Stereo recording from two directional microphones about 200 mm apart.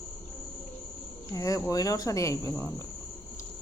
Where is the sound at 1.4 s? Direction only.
15° left (ahead or behind).